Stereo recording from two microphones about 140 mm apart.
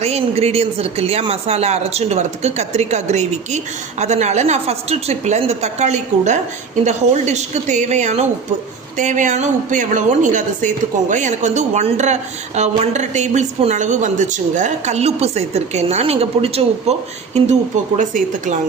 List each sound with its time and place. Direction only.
0.0 s speech: 50° right (ahead or behind)
17.9 s speech: 65° right (ahead or behind)